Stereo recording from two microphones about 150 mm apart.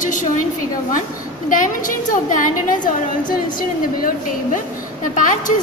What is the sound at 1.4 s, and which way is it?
A woman's voice, 60° left (ahead or behind).